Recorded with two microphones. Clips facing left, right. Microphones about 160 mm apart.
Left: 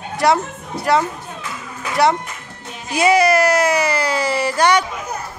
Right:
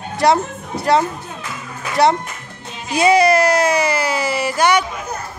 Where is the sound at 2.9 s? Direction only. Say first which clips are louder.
Right 1 dB; 25° right (ahead or behind).